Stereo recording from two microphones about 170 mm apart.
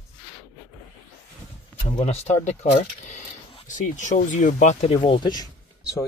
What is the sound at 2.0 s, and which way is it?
Speech, 40° left (ahead or behind).